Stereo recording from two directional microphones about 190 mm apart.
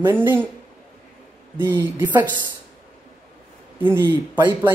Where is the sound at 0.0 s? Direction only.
10° right (ahead or behind).